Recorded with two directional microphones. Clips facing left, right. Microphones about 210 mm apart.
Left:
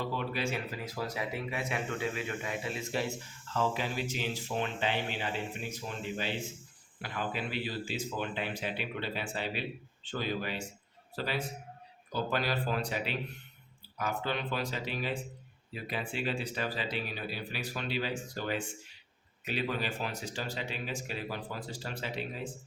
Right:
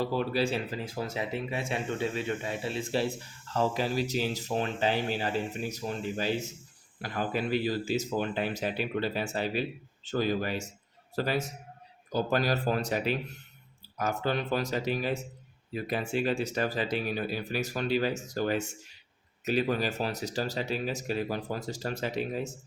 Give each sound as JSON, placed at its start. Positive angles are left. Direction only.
{"t": 0.0, "sound": "speech", "side_deg": -35}